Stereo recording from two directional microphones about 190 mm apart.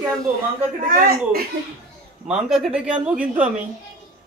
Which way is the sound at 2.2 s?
Centre (ahead or behind).